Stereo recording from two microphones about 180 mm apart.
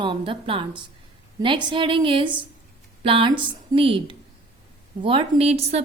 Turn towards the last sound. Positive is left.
turn(degrees=-35)  # may be behind; listen again after turning